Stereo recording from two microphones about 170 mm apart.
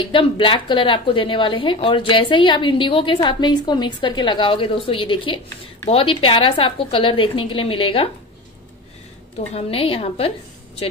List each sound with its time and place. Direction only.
0.1 s a woman's voice: 30° left (ahead or behind)
9.5 s a woman's voice: 35° left (ahead or behind)